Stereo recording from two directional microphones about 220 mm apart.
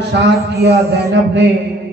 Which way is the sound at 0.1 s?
50° right (ahead or behind).